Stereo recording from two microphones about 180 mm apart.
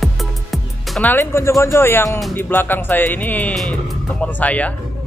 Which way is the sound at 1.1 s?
15° left (ahead or behind).